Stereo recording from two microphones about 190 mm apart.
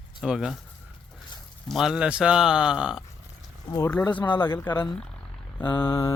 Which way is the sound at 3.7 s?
10° left (ahead or behind).